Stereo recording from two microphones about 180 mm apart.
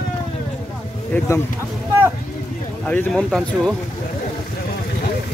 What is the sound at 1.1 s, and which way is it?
Speech, 10° left (ahead or behind).